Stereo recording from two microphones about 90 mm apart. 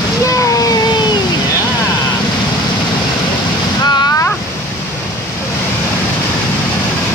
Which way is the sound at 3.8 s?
50° left (ahead or behind).